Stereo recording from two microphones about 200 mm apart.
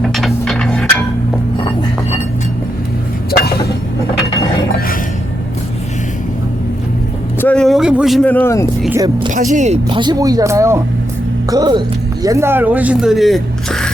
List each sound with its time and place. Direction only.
0.0 s a sound: centre (ahead or behind)
7.4 s vehicle: 5° left (ahead or behind)
9.0 s speech: 20° right (ahead or behind)
9.3 s speech: 40° right (ahead or behind)
9.9 s speech: 20° right (ahead or behind); by 13.9 s 5° left (ahead or behind)